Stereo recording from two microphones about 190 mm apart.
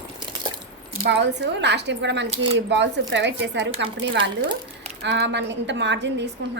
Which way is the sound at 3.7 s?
25° right (ahead or behind).